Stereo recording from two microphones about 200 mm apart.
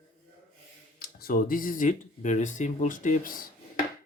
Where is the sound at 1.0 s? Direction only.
50° left (ahead or behind).